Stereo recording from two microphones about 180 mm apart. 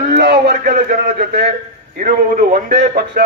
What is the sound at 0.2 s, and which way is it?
A man's voice, 65° right (ahead or behind).